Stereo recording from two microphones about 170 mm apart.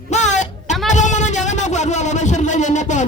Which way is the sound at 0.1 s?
45° left (ahead or behind).